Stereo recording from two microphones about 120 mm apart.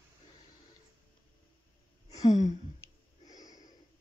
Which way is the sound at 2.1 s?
30° left (ahead or behind).